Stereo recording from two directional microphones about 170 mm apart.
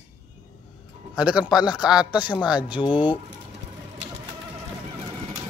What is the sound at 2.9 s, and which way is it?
Speech, 30° left (ahead or behind).